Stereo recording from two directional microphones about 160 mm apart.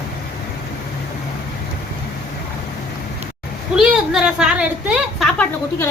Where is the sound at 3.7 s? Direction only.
5° right (ahead or behind).